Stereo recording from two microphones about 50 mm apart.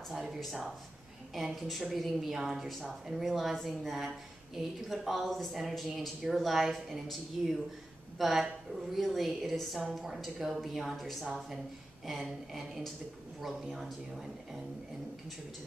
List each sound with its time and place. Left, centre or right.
0.1 s speech: centre